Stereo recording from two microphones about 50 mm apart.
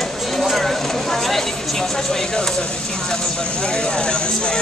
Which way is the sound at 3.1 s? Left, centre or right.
Centre.